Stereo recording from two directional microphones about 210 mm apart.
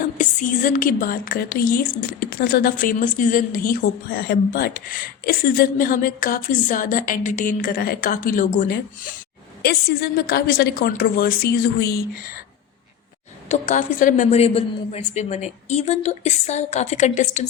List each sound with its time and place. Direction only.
0.0 s a woman's voice: 40° left (ahead or behind)
13.5 s a woman's voice: 35° left (ahead or behind)